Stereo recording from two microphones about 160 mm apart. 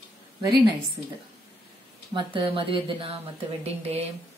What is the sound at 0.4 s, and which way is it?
Speech, 25° right (ahead or behind).